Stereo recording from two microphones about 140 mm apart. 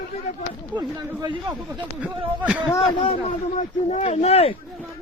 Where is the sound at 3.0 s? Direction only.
50° left (ahead or behind).